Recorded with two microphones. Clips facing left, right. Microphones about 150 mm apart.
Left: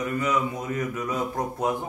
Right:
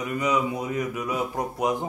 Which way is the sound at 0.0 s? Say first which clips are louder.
Right 1 dB; 15° right (ahead or behind).